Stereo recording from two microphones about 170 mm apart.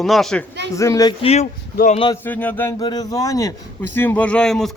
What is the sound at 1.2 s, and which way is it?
Speech, 40° left (ahead or behind).